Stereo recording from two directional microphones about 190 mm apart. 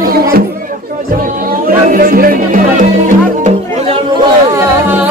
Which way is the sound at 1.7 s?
50° right (ahead or behind).